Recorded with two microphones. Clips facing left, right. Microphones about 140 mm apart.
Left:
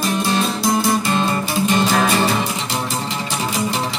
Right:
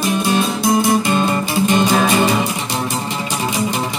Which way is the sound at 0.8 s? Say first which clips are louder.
Right 3 dB; 20° right (ahead or behind).